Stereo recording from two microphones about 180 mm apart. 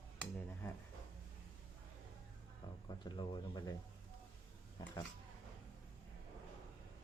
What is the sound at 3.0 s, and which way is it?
Speech, 25° left (ahead or behind).